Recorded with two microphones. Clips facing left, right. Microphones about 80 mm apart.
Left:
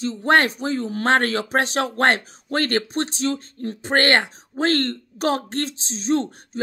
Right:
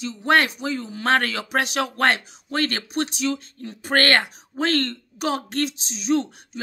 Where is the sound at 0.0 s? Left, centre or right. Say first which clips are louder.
Left 2 dB; left.